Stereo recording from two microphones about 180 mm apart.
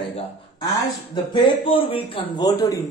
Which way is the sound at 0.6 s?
20° left (ahead or behind).